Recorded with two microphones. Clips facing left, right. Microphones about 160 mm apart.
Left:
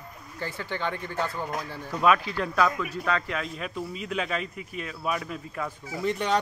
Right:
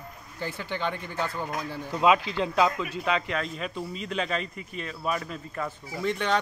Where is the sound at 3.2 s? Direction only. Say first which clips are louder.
Right 1 dB; centre (ahead or behind).